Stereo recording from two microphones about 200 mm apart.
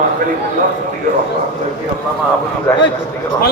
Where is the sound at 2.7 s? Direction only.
5° left (ahead or behind).